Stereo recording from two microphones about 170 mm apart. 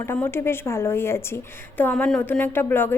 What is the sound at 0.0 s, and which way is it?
A woman's voice, 15° left (ahead or behind).